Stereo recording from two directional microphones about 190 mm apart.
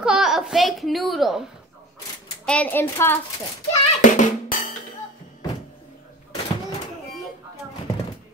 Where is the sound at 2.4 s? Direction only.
10° left (ahead or behind).